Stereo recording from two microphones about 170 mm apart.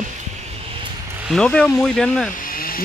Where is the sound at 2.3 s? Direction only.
55° left (ahead or behind).